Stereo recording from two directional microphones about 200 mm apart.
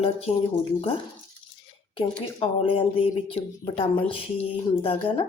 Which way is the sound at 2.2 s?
25° left (ahead or behind).